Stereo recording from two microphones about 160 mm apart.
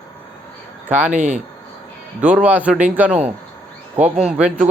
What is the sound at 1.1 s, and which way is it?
Speech, 50° right (ahead or behind).